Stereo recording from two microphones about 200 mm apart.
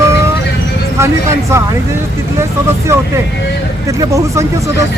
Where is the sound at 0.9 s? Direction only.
15° right (ahead or behind).